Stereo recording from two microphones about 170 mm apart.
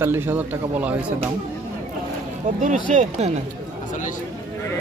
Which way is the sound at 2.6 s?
45° right (ahead or behind).